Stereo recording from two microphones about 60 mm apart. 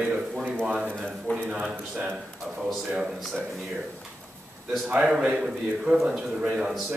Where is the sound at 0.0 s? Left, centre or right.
Centre.